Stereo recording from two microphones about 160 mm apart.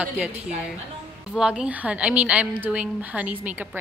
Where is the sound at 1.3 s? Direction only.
5° right (ahead or behind).